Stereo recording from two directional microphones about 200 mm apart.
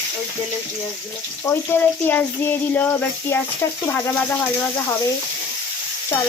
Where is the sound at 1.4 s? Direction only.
10° left (ahead or behind).